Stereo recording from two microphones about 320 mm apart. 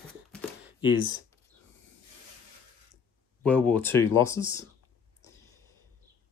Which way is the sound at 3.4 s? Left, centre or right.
Centre.